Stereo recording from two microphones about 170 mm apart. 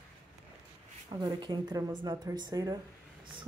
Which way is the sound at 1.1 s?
25° right (ahead or behind).